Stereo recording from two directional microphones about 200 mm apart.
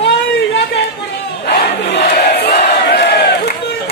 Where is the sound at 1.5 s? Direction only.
55° left (ahead or behind).